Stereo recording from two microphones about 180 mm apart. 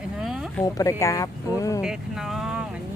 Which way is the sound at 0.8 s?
15° left (ahead or behind).